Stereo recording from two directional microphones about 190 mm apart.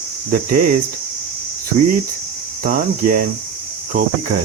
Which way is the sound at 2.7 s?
45° right (ahead or behind).